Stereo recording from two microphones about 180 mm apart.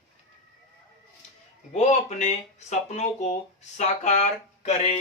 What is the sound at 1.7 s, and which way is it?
Speech, 40° left (ahead or behind).